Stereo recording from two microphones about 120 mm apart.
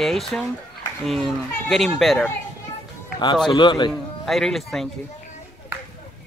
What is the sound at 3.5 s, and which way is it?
Speech, 40° left (ahead or behind).